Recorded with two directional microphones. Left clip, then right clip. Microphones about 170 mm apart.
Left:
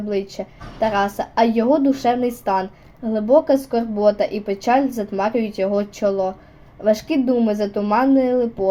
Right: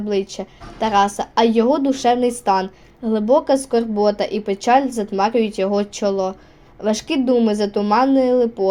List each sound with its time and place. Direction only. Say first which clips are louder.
0.1 s a woman's voice: right 2 dB; 25° right (ahead or behind)